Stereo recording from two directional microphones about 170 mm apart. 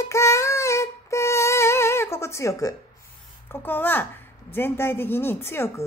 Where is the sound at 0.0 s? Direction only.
15° left (ahead or behind).